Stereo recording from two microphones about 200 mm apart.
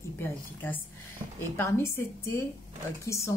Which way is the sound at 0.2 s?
10° left (ahead or behind).